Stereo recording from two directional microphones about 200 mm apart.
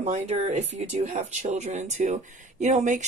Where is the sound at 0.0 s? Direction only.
35° right (ahead or behind).